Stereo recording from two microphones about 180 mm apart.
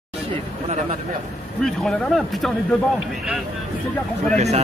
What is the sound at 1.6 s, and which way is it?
Speech, 5° left (ahead or behind).